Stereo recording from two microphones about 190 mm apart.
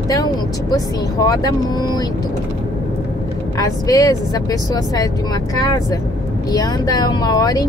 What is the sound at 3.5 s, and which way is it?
Speech, 20° left (ahead or behind).